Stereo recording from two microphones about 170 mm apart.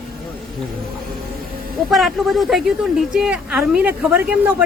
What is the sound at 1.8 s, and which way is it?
Speech, centre (ahead or behind).